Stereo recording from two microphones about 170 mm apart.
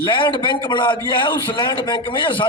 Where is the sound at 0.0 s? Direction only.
30° left (ahead or behind).